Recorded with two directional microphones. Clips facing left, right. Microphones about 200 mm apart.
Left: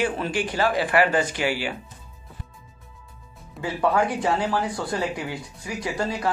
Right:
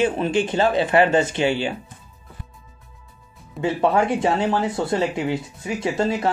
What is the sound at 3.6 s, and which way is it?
Speech, 25° right (ahead or behind).